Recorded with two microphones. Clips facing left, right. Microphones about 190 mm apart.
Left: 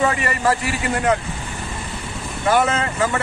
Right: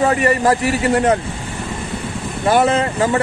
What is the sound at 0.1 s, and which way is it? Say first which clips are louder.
Speech: right 6 dB; 40° right (ahead or behind).